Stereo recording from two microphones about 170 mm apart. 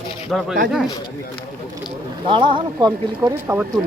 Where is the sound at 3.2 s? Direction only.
15° right (ahead or behind).